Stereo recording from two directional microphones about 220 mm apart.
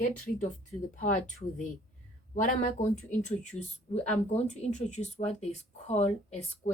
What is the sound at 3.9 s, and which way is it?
Speech, 30° left (ahead or behind).